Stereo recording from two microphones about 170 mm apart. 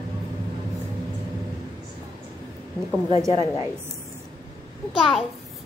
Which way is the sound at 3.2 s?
20° right (ahead or behind).